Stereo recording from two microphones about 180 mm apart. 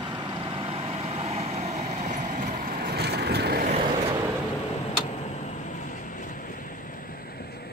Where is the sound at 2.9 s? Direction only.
65° right (ahead or behind).